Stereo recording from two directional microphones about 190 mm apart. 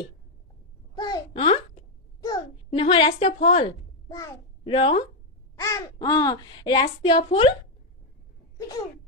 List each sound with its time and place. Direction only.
0.9 s a sound: 20° left (ahead or behind); by 3.6 s 40° left (ahead or behind)
4.1 s a child's voice: 20° left (ahead or behind)
4.7 s a woman's voice: 30° left (ahead or behind)
5.6 s a woman's voice: 15° left (ahead or behind)